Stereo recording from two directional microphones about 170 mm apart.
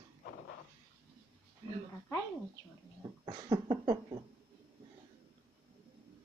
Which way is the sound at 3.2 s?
25° right (ahead or behind).